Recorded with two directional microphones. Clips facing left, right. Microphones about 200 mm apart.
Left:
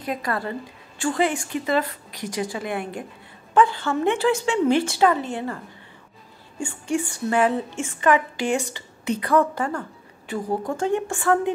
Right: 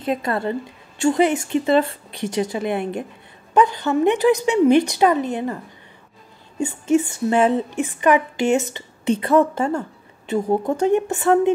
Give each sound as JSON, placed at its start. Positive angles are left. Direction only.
{"t": 0.0, "sound": "speech", "side_deg": -25}
{"t": 6.6, "sound": "speech", "side_deg": -20}